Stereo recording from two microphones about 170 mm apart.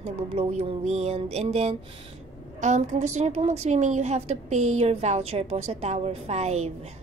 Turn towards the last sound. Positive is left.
turn(degrees=-40)  # may be behind; listen again after turning